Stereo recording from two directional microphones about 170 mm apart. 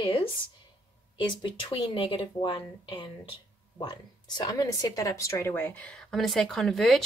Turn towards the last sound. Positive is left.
turn(degrees=0)  # may be behind; listen again after turning